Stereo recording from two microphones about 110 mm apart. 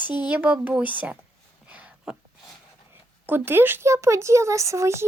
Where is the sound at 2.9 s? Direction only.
20° right (ahead or behind).